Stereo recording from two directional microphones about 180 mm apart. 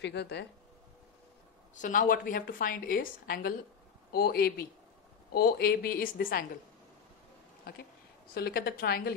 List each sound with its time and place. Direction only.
0.0 s speech: 70° left (ahead or behind)
1.8 s a woman's voice: 45° left (ahead or behind)
8.4 s speech: 60° left (ahead or behind)